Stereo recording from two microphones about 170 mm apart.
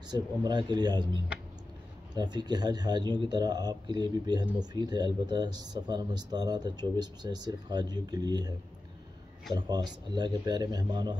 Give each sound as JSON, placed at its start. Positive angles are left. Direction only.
{"t": 0.1, "sound": "speech", "side_deg": -25}
{"t": 2.1, "sound": "speech", "side_deg": -25}
{"t": 9.6, "sound": "speech", "side_deg": -25}